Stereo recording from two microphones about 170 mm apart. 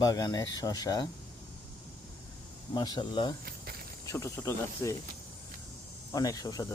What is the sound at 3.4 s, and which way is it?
Snake, 65° right (ahead or behind).